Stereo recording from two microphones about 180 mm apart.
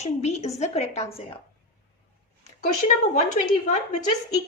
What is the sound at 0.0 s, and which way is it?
A woman's voice, 40° left (ahead or behind).